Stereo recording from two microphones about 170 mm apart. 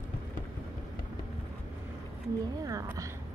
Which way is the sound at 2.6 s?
20° right (ahead or behind).